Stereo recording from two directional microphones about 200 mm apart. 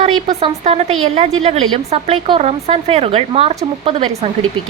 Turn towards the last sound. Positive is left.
turn(degrees=-30)  # may be behind; listen again after turning